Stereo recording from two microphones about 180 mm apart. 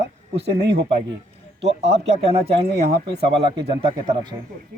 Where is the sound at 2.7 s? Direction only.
65° right (ahead or behind).